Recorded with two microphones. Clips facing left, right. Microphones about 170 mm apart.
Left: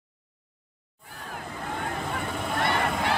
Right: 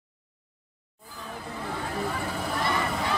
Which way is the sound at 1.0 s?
65° left (ahead or behind).